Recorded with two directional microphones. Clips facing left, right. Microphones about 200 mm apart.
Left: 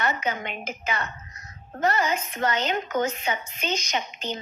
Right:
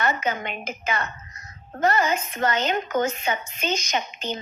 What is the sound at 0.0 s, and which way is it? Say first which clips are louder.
A woman's voice: right 2 dB; 50° right (ahead or behind).